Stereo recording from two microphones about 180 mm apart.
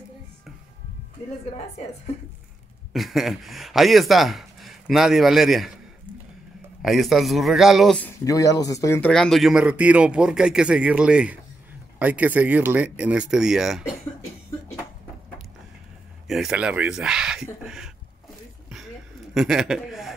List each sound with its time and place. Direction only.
2.9 s speech: centre (ahead or behind)
6.8 s speech: centre (ahead or behind)
8.2 s speech: 20° left (ahead or behind)
9.1 s speech: centre (ahead or behind)
16.3 s speech: centre (ahead or behind)
19.3 s a man's voice: centre (ahead or behind)